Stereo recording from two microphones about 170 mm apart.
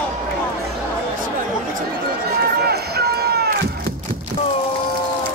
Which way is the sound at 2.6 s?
65° right (ahead or behind).